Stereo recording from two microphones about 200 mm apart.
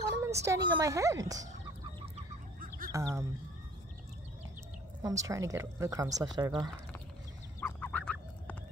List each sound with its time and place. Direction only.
0.2 s a woman's voice: 15° right (ahead or behind)
2.9 s speech: 15° right (ahead or behind)
5.0 s a woman's voice: 15° right (ahead or behind)
7.6 s a sound: 10° left (ahead or behind)